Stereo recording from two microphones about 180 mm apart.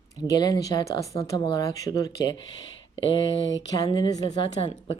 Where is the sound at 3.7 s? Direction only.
20° left (ahead or behind).